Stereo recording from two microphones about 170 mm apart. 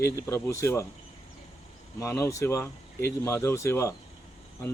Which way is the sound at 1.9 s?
15° left (ahead or behind).